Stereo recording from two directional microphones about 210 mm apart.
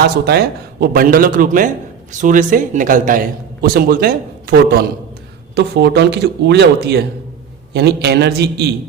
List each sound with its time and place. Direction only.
0.3 s a man's voice: 50° right (ahead or behind)